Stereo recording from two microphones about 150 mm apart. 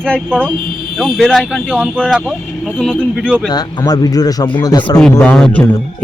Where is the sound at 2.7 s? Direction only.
5° left (ahead or behind).